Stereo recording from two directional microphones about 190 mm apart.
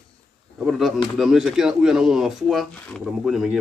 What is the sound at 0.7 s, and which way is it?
Speech, centre (ahead or behind).